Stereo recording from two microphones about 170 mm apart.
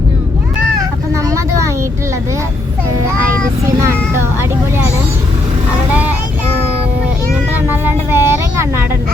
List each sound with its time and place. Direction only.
1.3 s a sound: 20° right (ahead or behind)
3.8 s vehicle: 15° right (ahead or behind)
5.9 s child singing: 10° right (ahead or behind)
7.5 s vehicle: 10° right (ahead or behind)